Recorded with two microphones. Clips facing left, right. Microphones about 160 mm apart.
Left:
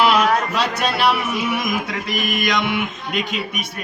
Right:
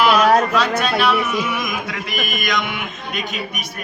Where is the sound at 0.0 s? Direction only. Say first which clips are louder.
Right 1 dB; 30° left (ahead or behind).